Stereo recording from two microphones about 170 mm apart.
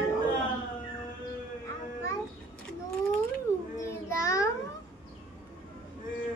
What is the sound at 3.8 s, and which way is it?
Child singing, 20° left (ahead or behind).